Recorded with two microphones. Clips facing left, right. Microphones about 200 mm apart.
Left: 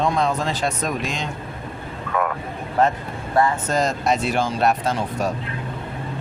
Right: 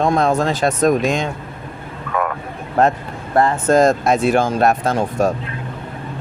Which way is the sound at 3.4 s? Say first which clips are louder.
Right 6 dB; 55° right (ahead or behind).